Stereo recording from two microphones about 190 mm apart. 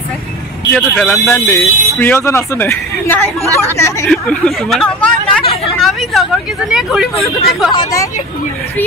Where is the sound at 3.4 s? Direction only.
15° right (ahead or behind).